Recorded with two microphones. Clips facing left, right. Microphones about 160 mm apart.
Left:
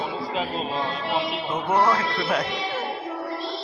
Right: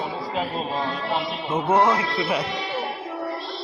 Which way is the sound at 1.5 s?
25° right (ahead or behind).